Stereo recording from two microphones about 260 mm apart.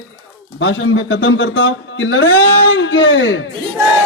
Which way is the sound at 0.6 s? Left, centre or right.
Left.